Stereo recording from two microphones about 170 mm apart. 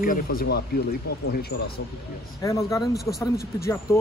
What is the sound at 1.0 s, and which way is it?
Speech, 70° left (ahead or behind).